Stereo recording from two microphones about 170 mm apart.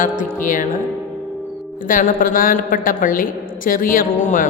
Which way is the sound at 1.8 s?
55° left (ahead or behind).